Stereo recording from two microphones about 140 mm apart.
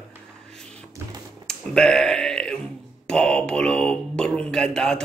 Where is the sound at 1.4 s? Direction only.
5° left (ahead or behind).